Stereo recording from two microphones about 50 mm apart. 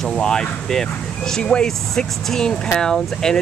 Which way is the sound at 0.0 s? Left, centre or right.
Centre.